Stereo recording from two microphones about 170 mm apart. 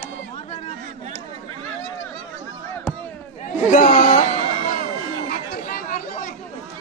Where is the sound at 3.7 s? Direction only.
50° left (ahead or behind).